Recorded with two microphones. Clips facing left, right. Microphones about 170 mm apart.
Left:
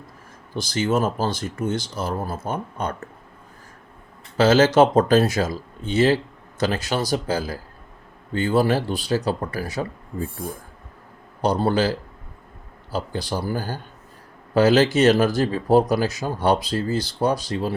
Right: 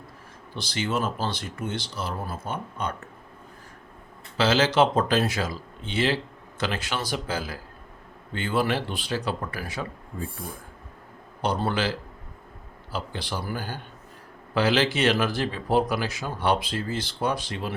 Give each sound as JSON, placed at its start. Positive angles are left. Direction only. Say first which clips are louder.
{"t": 0.5, "sound": "speech", "louder": "left 6 dB", "side_deg": 45}
{"t": 4.4, "sound": "speech", "louder": "left 6 dB", "side_deg": 45}
{"t": 11.4, "sound": "speech", "louder": "left 6 dB", "side_deg": 40}